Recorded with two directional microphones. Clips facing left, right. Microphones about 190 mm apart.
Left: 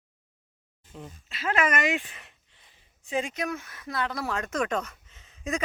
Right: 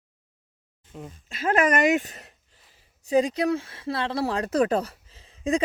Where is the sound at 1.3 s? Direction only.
45° right (ahead or behind).